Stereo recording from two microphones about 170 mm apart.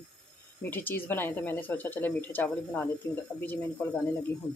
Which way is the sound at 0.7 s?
10° left (ahead or behind).